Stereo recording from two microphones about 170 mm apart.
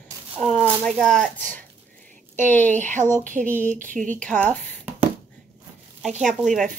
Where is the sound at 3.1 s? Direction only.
50° right (ahead or behind).